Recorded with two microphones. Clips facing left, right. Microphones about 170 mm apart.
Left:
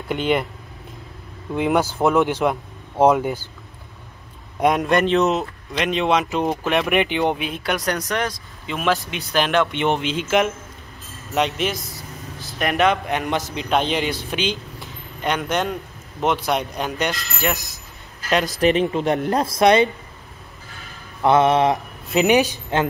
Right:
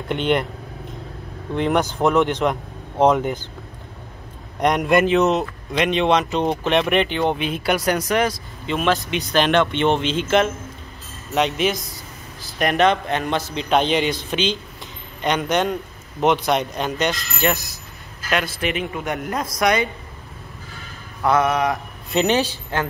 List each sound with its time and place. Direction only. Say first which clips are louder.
0.1 s speech: even; 5° left (ahead or behind)
1.5 s speech: even; 5° left (ahead or behind)
4.6 s speech: right 1 dB; 5° left (ahead or behind)
7.4 s speech: right 3 dB; centre (ahead or behind)
11.3 s speech: right 2 dB; centre (ahead or behind); by 13.5 s 15° left (ahead or behind)
13.6 s speech: right 3 dB; centre (ahead or behind)
18.3 s speech: left 5 dB; 40° left (ahead or behind)
21.2 s mantra: left 3 dB; 25° left (ahead or behind)
22.1 s speech: left 2 dB; 10° left (ahead or behind)